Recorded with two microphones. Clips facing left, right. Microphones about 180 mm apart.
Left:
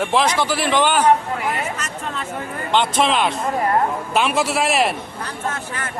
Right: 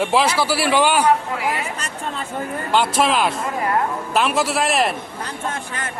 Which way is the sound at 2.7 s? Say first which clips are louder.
Even; 5° right (ahead or behind).